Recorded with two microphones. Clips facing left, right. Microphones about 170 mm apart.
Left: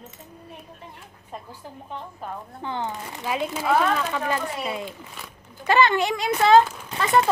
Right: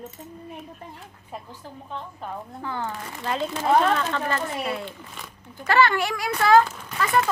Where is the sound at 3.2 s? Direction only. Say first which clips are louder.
Right 1 dB; 10° left (ahead or behind).